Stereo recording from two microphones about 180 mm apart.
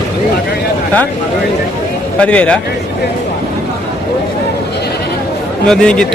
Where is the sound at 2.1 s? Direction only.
5° left (ahead or behind).